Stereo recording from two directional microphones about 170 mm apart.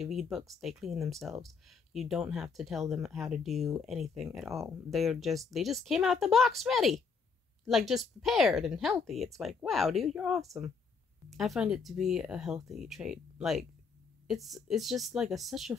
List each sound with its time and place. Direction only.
0.0 s speech: centre (ahead or behind)